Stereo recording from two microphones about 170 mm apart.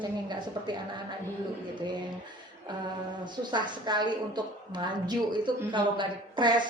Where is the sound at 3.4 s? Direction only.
25° right (ahead or behind).